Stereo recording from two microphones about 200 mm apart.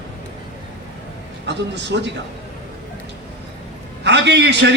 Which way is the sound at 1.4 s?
60° right (ahead or behind).